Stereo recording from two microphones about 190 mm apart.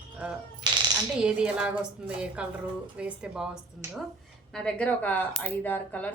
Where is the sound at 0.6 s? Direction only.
20° right (ahead or behind).